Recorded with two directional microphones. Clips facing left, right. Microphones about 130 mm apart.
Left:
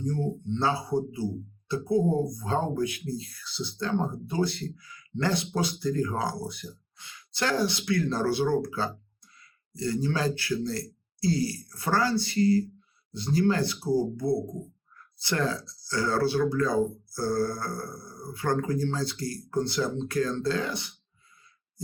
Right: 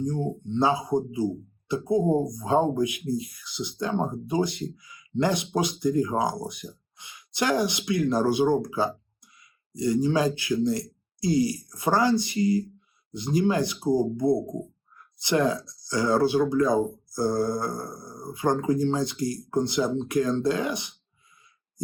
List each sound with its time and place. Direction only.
0.0 s speech: 15° right (ahead or behind)